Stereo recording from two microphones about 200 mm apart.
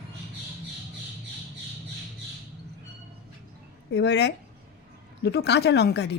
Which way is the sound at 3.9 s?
60° left (ahead or behind).